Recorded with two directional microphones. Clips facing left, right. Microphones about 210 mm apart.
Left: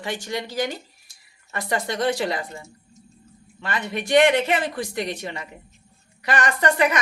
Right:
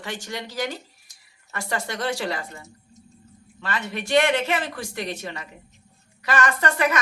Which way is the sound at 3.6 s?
15° left (ahead or behind).